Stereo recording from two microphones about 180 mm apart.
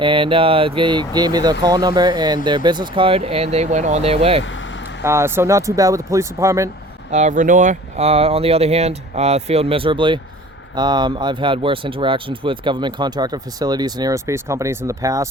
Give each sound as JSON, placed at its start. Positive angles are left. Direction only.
{"t": 0.0, "sound": "speech", "side_deg": -30}
{"t": 4.4, "sound": "vehicle", "side_deg": 90}
{"t": 5.0, "sound": "speech", "side_deg": -15}
{"t": 7.1, "sound": "speech", "side_deg": -40}